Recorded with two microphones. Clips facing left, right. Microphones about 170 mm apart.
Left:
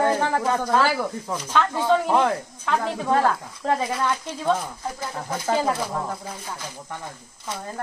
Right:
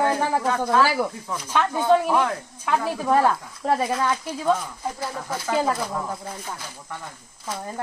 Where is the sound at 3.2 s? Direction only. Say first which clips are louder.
Right 1 dB; 5° right (ahead or behind).